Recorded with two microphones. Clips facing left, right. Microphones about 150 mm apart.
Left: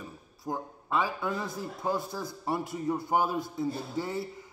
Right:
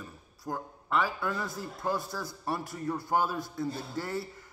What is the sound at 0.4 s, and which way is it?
A man's voice, 20° left (ahead or behind).